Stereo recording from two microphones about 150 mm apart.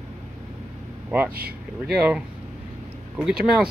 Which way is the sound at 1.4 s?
90° right.